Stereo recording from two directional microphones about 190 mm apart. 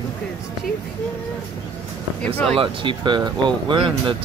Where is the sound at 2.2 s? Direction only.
5° left (ahead or behind).